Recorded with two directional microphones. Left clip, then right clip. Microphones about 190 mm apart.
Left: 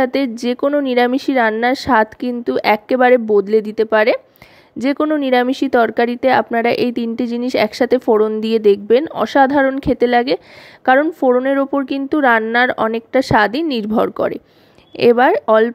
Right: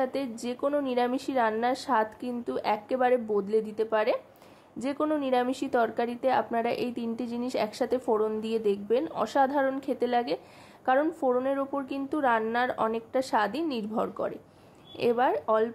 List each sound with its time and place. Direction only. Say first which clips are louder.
0.0 s speech: left 13 dB; 45° left (ahead or behind)